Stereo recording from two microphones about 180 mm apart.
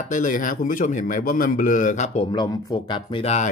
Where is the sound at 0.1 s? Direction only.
45° left (ahead or behind).